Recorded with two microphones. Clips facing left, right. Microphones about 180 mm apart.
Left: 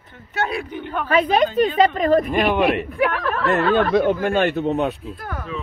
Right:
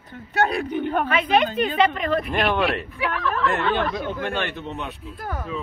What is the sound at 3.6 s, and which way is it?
Speech, 40° left (ahead or behind).